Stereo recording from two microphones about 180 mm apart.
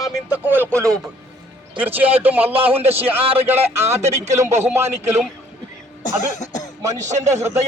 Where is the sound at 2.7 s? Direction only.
35° right (ahead or behind).